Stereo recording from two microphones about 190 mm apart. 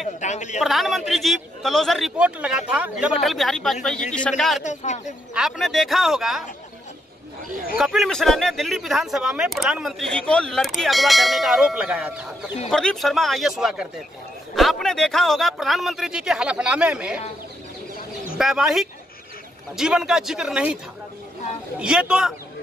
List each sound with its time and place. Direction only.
0.2 s speech: 40° left (ahead or behind)
0.6 s speech: centre (ahead or behind)
4.6 s speech: 40° left (ahead or behind)
5.3 s speech: centre (ahead or behind)
7.7 s speech: centre (ahead or behind)
18.4 s speech: centre (ahead or behind)